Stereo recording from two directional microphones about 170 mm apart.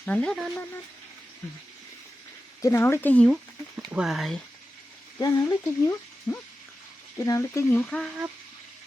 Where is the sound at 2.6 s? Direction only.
15° left (ahead or behind); by 4.4 s centre (ahead or behind).